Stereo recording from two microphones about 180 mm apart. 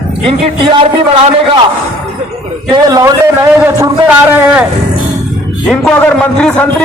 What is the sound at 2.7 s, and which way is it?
A man's voice, 20° right (ahead or behind).